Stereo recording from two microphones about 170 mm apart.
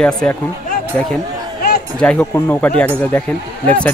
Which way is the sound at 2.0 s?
10° left (ahead or behind).